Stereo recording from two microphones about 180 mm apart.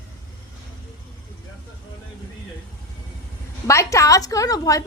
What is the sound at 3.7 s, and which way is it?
A woman's voice, 15° left (ahead or behind).